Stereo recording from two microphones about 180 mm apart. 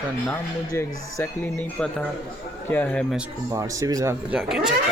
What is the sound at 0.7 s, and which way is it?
Speech, 15° left (ahead or behind).